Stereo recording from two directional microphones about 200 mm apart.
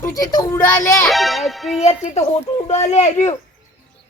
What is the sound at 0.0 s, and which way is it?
A child's voice, 20° left (ahead or behind).